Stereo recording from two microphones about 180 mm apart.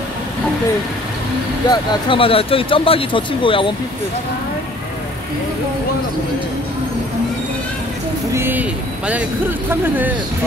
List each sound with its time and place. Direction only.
1.7 s speech: 30° left (ahead or behind)
8.3 s speech: 10° right (ahead or behind)